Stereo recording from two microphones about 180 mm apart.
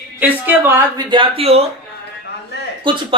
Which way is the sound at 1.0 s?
25° right (ahead or behind).